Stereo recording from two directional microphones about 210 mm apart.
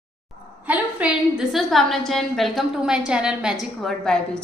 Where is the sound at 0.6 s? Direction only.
5° right (ahead or behind).